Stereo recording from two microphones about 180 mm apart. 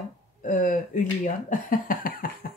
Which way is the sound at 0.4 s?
45° left (ahead or behind).